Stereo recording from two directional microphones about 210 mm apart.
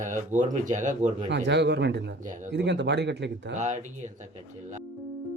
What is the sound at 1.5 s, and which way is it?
Speech, 55° right (ahead or behind).